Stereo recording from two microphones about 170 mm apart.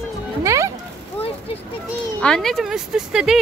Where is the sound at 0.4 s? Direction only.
15° right (ahead or behind).